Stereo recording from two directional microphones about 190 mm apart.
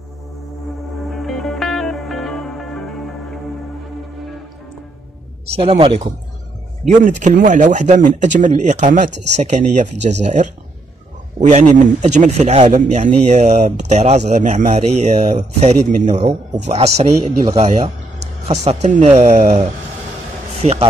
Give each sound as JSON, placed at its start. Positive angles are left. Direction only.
{"t": 1.1, "sound": "music", "side_deg": 0}
{"t": 5.6, "sound": "speech", "side_deg": -30}
{"t": 6.8, "sound": "speech", "side_deg": -40}